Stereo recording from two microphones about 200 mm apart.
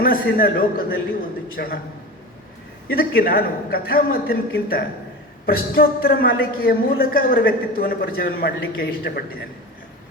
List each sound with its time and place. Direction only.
0.0 s a woman's voice: 45° left (ahead or behind)
2.9 s a woman's voice: 50° left (ahead or behind)